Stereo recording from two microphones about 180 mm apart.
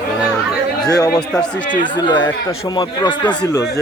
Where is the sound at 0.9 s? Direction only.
20° left (ahead or behind).